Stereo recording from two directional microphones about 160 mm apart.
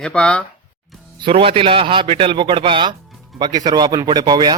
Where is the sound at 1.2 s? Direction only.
35° right (ahead or behind).